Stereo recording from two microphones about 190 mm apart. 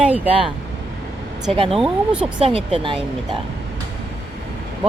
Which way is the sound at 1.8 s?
5° right (ahead or behind).